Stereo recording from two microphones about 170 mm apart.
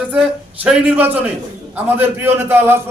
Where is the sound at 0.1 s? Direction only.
5° right (ahead or behind).